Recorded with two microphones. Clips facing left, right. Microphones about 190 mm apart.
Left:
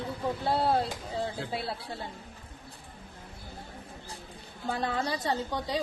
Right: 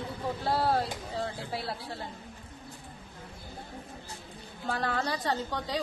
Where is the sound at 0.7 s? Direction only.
20° left (ahead or behind).